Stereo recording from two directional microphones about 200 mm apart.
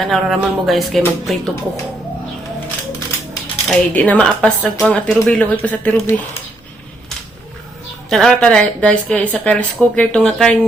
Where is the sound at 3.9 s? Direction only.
5° left (ahead or behind).